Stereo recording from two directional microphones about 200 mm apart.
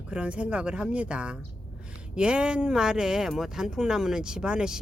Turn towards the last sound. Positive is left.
turn(degrees=-5)  # may be behind; listen again after turning